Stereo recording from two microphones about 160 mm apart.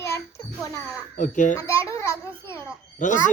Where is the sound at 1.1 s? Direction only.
55° left (ahead or behind).